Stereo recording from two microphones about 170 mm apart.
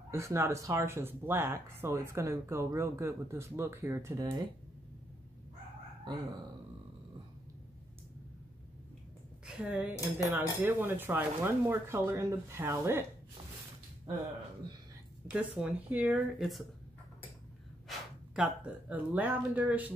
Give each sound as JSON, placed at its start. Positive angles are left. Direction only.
{"t": 0.1, "sound": "speech", "side_deg": -15}
{"t": 9.6, "sound": "speech", "side_deg": -5}
{"t": 15.2, "sound": "speech", "side_deg": -5}
{"t": 17.8, "sound": "speech", "side_deg": -5}